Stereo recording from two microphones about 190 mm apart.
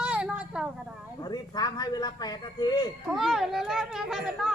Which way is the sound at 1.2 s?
20° left (ahead or behind).